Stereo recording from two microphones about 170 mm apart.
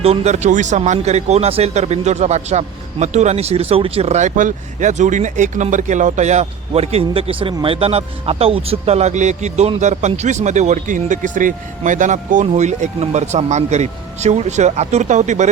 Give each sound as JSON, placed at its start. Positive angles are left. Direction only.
{"t": 0.0, "sound": "speech", "side_deg": -40}